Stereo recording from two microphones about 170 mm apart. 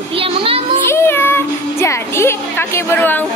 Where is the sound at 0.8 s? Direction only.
15° left (ahead or behind).